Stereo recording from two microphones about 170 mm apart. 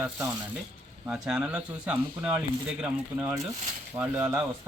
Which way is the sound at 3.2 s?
20° right (ahead or behind).